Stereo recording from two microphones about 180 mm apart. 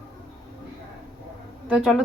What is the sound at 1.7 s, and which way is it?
Speech, 5° right (ahead or behind).